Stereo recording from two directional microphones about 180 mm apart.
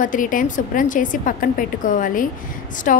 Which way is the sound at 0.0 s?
45° left (ahead or behind).